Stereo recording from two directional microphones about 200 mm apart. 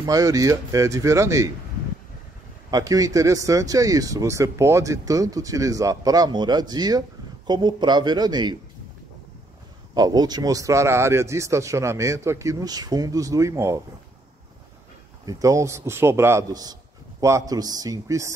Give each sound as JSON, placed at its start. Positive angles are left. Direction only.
{"t": 0.0, "sound": "speech", "side_deg": -15}
{"t": 2.7, "sound": "speech", "side_deg": -15}
{"t": 9.9, "sound": "speech", "side_deg": -20}
{"t": 15.2, "sound": "speech", "side_deg": -15}